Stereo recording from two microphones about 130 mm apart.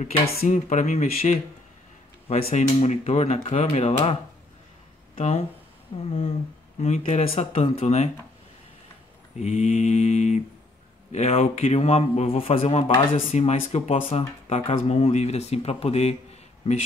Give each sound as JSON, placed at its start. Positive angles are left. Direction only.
{"t": 0.0, "sound": "speech", "side_deg": 65}
{"t": 2.2, "sound": "speech", "side_deg": 50}
{"t": 9.4, "sound": "speech", "side_deg": 55}